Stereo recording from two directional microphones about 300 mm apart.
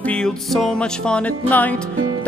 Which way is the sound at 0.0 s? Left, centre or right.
Centre.